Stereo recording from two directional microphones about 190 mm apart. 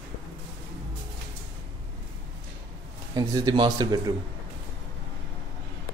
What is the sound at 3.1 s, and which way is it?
Speech, 20° right (ahead or behind).